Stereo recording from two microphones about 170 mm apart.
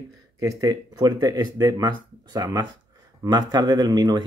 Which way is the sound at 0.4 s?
20° right (ahead or behind).